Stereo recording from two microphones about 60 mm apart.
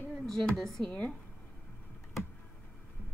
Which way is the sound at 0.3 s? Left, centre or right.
Centre.